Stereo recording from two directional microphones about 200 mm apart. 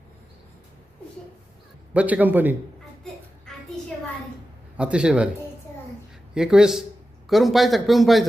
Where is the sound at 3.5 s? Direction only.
Centre (ahead or behind).